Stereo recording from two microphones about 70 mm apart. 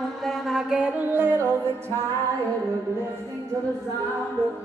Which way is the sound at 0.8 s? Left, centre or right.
Right.